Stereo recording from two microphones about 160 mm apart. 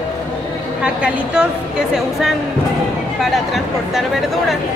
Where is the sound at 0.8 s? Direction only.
5° right (ahead or behind).